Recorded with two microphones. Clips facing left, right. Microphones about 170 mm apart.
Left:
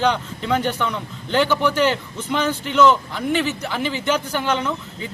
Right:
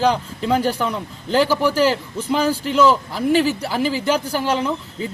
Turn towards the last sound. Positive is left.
turn(degrees=-30)  # may be behind; listen again after turning